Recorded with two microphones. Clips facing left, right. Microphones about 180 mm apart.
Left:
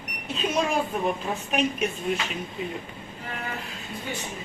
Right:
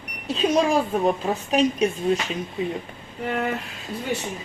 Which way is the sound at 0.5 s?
35° right (ahead or behind).